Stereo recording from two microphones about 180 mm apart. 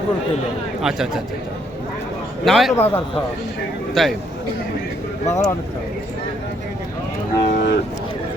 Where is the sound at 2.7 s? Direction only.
15° left (ahead or behind).